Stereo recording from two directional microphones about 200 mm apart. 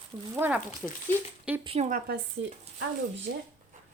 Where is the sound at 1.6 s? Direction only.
30° right (ahead or behind).